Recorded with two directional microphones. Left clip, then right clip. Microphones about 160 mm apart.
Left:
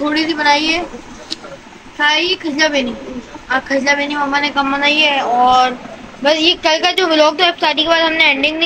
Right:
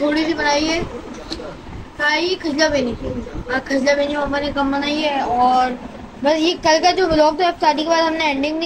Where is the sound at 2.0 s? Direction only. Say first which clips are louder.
Left 4 dB; 25° left (ahead or behind).